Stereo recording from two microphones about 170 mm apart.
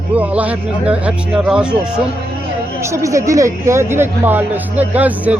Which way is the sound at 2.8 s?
15° right (ahead or behind).